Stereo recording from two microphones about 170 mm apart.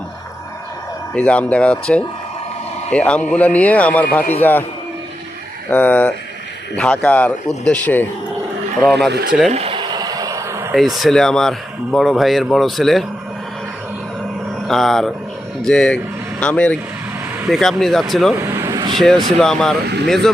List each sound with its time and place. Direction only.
1.1 s speech: 5° left (ahead or behind)
5.7 s speech: 10° left (ahead or behind)
9.0 s speech: 75° right (ahead or behind)
9.5 s a sound: 35° right (ahead or behind); by 10.8 s 15° right (ahead or behind)
10.8 s speech: centre (ahead or behind)
14.7 s speech: centre (ahead or behind)
18.3 s vehicle: 15° right (ahead or behind)
18.9 s speech: centre (ahead or behind)